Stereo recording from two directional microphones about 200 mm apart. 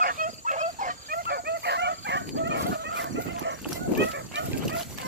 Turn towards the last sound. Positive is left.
turn(degrees=-60)  # may be behind; listen again after turning